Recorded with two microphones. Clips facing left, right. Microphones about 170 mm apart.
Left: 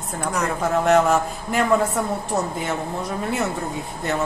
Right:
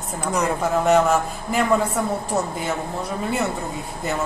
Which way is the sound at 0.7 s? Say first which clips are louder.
Left 1 dB; centre (ahead or behind).